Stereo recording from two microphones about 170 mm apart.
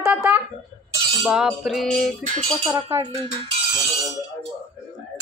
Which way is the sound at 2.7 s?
20° right (ahead or behind).